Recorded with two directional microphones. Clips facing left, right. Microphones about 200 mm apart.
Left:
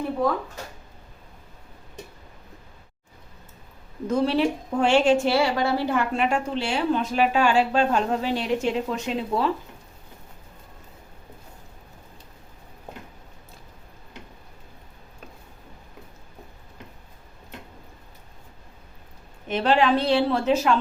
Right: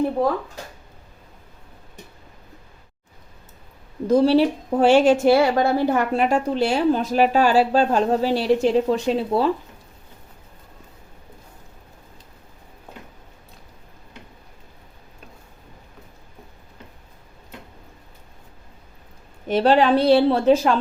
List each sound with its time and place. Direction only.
4.0 s a woman's voice: 35° right (ahead or behind)
5.2 s a woman's voice: 50° right (ahead or behind); by 9.5 s 35° right (ahead or behind)
19.5 s a woman's voice: 35° right (ahead or behind)